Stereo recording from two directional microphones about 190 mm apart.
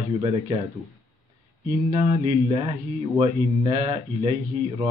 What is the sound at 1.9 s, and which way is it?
Speech, 25° right (ahead or behind).